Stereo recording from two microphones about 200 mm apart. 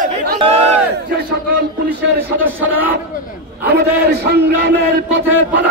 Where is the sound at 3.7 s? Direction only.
55° right (ahead or behind).